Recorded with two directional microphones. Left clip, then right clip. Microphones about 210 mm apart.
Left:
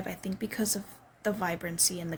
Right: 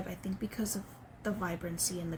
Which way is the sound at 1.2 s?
45° left (ahead or behind).